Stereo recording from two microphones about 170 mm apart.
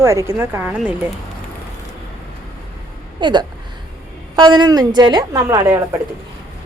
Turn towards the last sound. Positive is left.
turn(degrees=-15)  # may be behind; listen again after turning